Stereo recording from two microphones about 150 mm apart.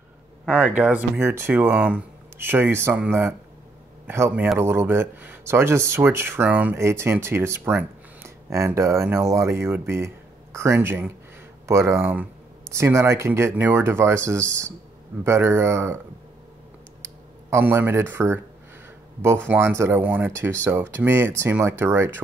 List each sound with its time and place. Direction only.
0.5 s speech: 10° right (ahead or behind)
17.0 s speech: 15° right (ahead or behind)